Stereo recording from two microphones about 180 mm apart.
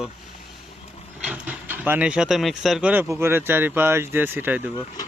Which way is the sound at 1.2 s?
5° right (ahead or behind).